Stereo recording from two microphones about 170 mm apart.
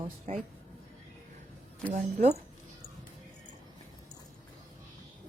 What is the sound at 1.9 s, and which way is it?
Speech, 40° right (ahead or behind).